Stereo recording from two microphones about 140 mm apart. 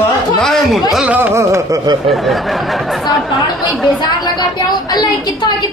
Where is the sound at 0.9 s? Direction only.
10° right (ahead or behind).